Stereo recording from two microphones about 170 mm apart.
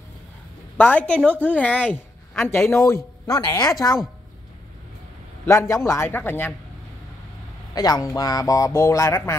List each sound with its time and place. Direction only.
0.7 s a woman's voice: 10° left (ahead or behind)
5.4 s a woman's voice: 15° left (ahead or behind)
7.7 s a man's voice: 20° left (ahead or behind)